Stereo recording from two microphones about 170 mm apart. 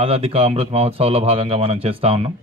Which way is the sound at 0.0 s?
35° right (ahead or behind).